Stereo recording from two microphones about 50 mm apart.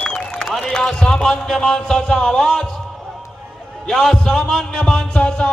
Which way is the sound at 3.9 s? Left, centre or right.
Centre.